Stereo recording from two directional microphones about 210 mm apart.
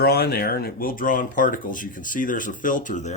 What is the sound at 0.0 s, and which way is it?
Speech, 50° left (ahead or behind).